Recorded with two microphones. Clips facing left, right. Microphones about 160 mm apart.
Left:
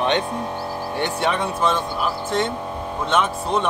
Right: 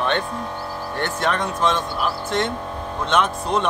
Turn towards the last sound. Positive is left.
turn(degrees=5)  # may be behind; listen again after turning